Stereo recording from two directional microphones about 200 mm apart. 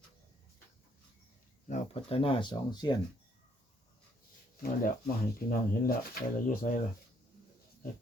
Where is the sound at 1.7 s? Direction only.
30° left (ahead or behind).